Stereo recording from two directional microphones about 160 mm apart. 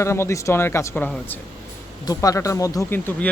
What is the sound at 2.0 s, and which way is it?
Speech, 20° left (ahead or behind).